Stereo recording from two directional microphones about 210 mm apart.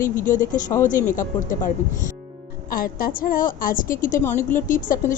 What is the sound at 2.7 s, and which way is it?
A woman's voice, 45° left (ahead or behind).